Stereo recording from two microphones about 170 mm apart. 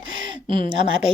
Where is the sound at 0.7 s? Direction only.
30° right (ahead or behind).